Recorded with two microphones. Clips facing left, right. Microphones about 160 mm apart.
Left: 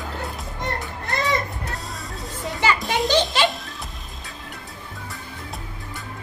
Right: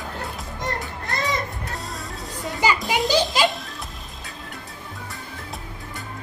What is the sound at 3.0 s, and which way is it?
Music, 10° right (ahead or behind).